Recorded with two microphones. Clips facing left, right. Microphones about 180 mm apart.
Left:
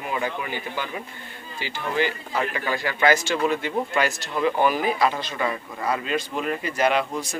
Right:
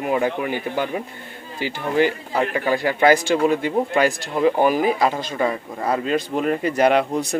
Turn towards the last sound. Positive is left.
turn(degrees=-50)  # may be behind; listen again after turning